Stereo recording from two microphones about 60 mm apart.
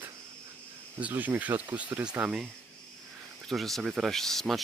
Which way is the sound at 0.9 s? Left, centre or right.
Right.